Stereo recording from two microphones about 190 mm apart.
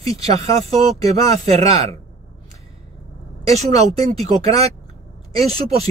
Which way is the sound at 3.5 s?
35° right (ahead or behind).